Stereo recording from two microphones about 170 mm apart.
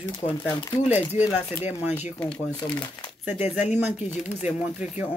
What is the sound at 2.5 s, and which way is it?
Speech, 25° left (ahead or behind).